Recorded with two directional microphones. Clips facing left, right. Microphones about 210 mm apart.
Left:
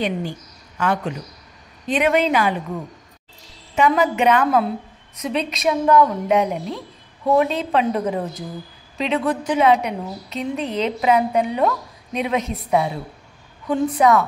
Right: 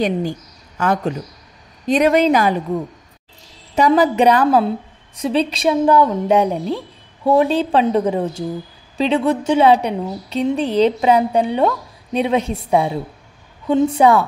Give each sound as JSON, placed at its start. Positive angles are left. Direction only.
{"t": 0.7, "sound": "a woman's voice", "side_deg": -40}
{"t": 3.7, "sound": "a woman's voice", "side_deg": -35}